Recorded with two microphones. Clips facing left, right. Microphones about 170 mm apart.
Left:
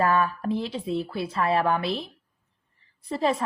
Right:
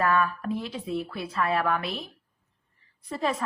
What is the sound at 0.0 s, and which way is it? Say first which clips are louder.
A woman's voice: left 2 dB; 30° left (ahead or behind).